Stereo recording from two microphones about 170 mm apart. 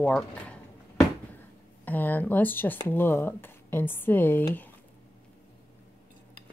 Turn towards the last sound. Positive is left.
turn(degrees=10)  # may be behind; listen again after turning